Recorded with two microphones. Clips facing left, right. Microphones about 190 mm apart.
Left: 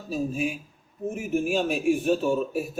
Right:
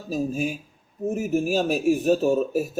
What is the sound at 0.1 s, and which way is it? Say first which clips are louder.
A man's voice: right 2 dB; 40° right (ahead or behind).